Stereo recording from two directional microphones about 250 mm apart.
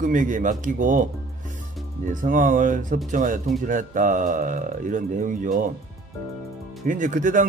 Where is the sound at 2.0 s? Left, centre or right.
Right.